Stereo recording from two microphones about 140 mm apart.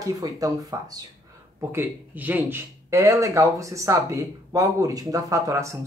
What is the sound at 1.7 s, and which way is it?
Speech, 15° right (ahead or behind).